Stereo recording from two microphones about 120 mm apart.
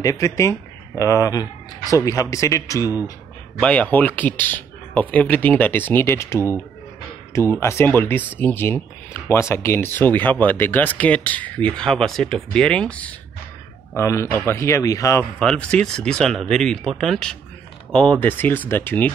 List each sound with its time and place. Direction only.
0.0 s speech: 30° left (ahead or behind)
3.6 s speech: 10° left (ahead or behind)
13.9 s speech: 25° left (ahead or behind)
15.3 s speech: 10° left (ahead or behind)